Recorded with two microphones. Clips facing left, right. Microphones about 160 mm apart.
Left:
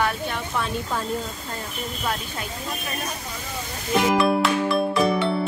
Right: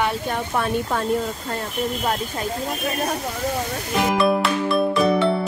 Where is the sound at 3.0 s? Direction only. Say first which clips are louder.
Right 9 dB; 60° right (ahead or behind).